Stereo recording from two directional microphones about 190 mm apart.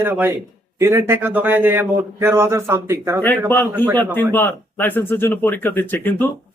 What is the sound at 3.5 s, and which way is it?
Speech, 10° left (ahead or behind).